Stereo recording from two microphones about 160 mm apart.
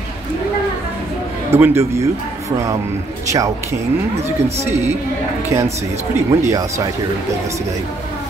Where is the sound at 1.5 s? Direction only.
15° right (ahead or behind).